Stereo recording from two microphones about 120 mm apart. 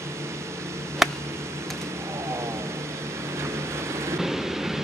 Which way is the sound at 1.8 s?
25° right (ahead or behind).